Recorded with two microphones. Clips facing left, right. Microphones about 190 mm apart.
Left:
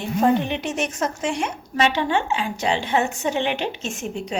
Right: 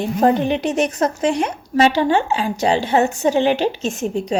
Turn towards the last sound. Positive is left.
turn(degrees=-40)  # may be behind; listen again after turning